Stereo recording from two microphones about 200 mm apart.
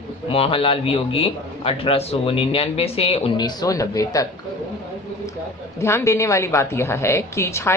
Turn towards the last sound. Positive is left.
turn(degrees=15)  # may be behind; listen again after turning